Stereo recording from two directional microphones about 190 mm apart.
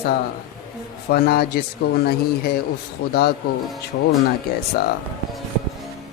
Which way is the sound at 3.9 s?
70° left (ahead or behind).